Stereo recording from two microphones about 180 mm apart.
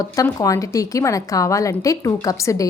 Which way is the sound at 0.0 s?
20° left (ahead or behind).